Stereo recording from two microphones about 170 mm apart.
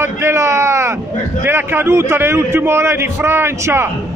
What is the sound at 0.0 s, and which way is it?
A man's voice, 15° right (ahead or behind).